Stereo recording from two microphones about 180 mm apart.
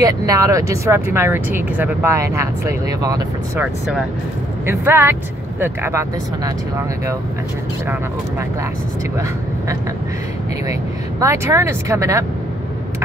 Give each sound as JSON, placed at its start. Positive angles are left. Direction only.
{"t": 0.0, "sound": "speech", "side_deg": -20}
{"t": 4.6, "sound": "speech", "side_deg": -10}
{"t": 10.7, "sound": "speech", "side_deg": -15}